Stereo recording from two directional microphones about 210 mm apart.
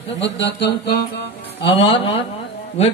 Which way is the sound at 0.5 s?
55° left (ahead or behind).